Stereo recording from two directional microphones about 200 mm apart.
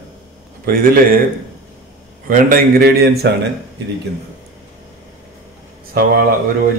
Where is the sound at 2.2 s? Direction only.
45° right (ahead or behind).